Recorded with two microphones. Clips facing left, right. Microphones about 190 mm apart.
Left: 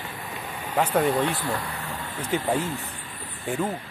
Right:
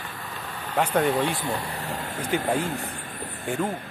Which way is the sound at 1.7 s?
40° right (ahead or behind).